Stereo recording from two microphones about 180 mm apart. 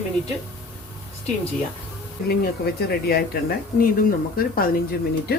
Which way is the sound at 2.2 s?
55° left (ahead or behind).